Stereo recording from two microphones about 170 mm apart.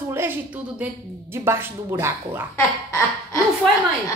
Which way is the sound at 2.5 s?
15° left (ahead or behind).